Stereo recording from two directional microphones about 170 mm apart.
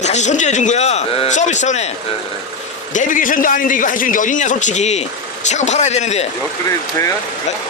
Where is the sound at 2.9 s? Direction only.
50° left (ahead or behind).